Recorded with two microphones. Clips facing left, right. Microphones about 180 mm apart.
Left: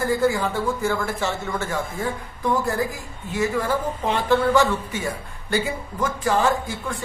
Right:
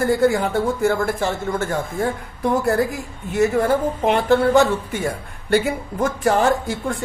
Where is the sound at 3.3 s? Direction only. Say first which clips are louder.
Right 5 dB; 55° right (ahead or behind).